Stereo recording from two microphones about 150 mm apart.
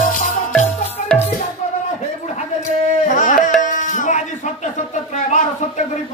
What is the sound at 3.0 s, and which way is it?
Music, 60° left (ahead or behind).